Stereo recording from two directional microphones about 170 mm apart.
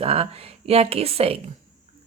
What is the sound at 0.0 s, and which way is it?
Speech, 35° right (ahead or behind).